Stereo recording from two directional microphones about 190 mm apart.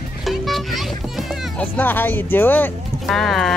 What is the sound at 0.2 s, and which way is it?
Music, centre (ahead or behind).